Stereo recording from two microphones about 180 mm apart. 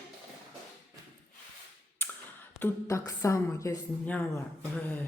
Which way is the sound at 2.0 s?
10° left (ahead or behind).